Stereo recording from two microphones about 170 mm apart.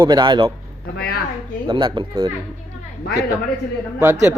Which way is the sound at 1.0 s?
65° left (ahead or behind).